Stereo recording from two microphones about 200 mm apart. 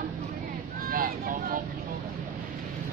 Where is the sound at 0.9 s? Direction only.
45° right (ahead or behind).